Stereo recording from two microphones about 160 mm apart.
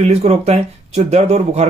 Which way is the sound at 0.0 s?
40° right (ahead or behind).